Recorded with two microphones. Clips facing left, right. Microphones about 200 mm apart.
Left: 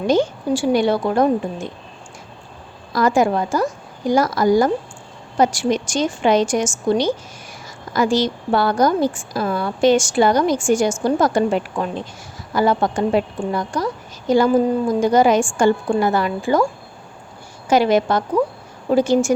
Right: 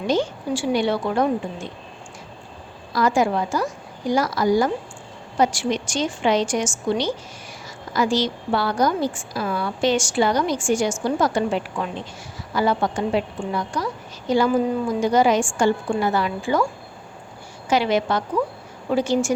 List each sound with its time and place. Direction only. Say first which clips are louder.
0.1 s a woman's voice: left 4 dB; 45° left (ahead or behind)
2.9 s a woman's voice: left 3 dB; 45° left (ahead or behind)
17.7 s a woman's voice: left 5 dB; 45° left (ahead or behind)